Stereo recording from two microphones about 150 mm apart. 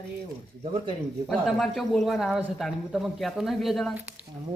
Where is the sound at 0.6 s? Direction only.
40° right (ahead or behind).